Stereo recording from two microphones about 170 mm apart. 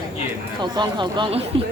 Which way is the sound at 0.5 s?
25° right (ahead or behind).